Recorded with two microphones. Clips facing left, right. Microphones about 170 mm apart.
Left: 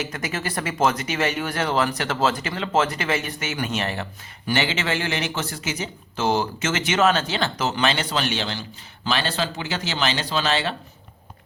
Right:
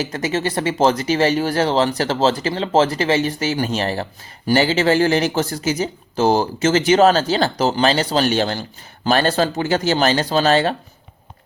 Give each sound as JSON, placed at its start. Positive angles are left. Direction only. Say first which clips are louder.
{"t": 0.0, "sound": "speech", "louder": "right 7 dB", "side_deg": -30}